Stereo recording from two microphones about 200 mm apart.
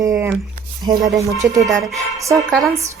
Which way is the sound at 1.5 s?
15° right (ahead or behind).